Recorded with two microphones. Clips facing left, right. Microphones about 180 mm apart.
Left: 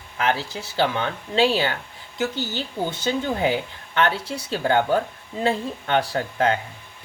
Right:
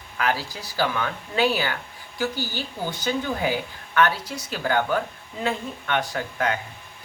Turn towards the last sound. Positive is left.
turn(degrees=30)  # may be behind; listen again after turning